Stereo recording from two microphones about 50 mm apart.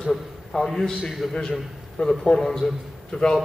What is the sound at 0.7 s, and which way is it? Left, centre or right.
A man's voice, centre.